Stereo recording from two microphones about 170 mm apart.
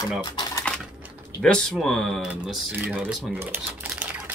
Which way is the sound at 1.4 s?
5° left (ahead or behind).